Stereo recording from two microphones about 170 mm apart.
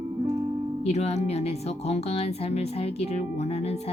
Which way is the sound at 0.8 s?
40° left (ahead or behind).